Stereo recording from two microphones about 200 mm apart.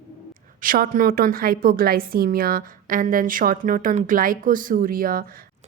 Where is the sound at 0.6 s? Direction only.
45° right (ahead or behind).